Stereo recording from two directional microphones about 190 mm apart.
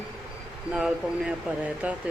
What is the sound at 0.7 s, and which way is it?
Speech, 5° right (ahead or behind).